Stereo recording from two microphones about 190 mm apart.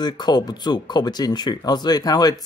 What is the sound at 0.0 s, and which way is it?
Speech, 20° left (ahead or behind).